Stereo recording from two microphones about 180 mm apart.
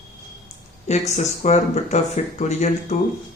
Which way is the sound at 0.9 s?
40° left (ahead or behind).